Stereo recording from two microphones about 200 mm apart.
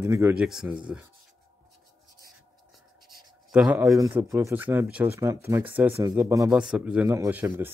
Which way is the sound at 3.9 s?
15° right (ahead or behind).